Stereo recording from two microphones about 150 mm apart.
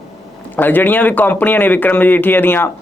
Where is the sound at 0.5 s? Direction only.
10° left (ahead or behind).